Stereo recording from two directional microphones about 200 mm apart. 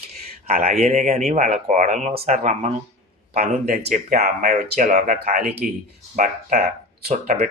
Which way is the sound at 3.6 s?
45° right (ahead or behind).